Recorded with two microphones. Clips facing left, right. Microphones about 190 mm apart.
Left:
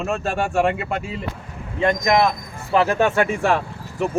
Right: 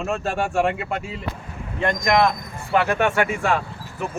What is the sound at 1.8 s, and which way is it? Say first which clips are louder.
Speech: left 2 dB; 15° left (ahead or behind).